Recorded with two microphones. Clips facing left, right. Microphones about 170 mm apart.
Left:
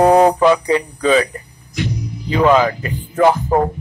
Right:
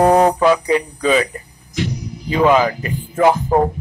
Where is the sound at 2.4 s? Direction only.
15° right (ahead or behind).